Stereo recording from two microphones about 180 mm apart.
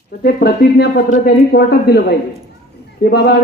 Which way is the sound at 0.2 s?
60° left (ahead or behind).